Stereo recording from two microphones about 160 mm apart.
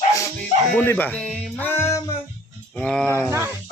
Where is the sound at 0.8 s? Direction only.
10° left (ahead or behind).